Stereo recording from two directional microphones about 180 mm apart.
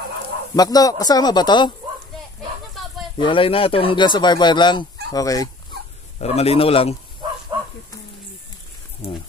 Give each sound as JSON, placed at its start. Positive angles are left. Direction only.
{"t": 0.6, "sound": "speech", "side_deg": 20}
{"t": 3.2, "sound": "speech", "side_deg": 30}
{"t": 6.1, "sound": "a man's voice", "side_deg": 35}
{"t": 9.0, "sound": "a man's voice", "side_deg": 35}